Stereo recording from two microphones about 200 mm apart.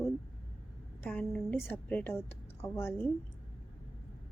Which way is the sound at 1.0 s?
5° left (ahead or behind).